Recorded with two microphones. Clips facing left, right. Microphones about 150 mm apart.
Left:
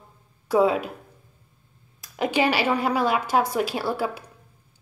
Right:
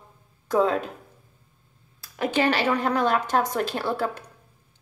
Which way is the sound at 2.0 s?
15° left (ahead or behind).